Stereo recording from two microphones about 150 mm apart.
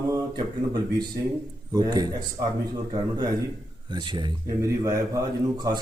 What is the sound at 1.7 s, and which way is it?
Speech, 25° right (ahead or behind).